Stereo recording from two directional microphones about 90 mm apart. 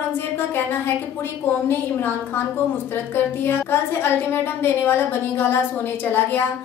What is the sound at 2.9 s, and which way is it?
A woman's voice, 25° left (ahead or behind).